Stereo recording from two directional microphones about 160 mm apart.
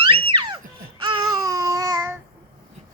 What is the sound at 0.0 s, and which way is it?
Babbling, 30° right (ahead or behind).